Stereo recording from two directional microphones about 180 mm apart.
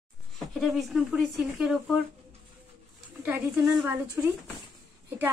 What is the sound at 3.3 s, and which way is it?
A woman's voice, 10° right (ahead or behind).